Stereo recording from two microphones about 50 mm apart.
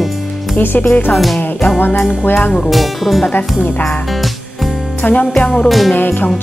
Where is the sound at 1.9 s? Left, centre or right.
Centre.